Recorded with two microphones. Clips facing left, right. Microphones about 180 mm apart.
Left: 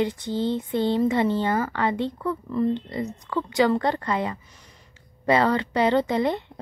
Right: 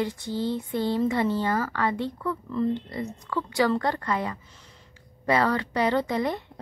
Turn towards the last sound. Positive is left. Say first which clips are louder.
# left 3 dB
turn(degrees=25)  # may be behind; listen again after turning